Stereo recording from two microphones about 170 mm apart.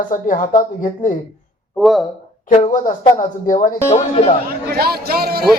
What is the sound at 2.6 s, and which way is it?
Speech, 50° left (ahead or behind).